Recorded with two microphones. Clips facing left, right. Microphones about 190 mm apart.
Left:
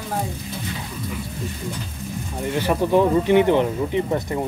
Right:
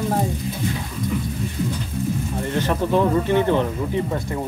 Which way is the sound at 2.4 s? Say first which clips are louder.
Left 2 dB; 10° left (ahead or behind).